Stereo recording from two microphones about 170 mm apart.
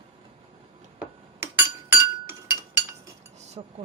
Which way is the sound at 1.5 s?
15° right (ahead or behind).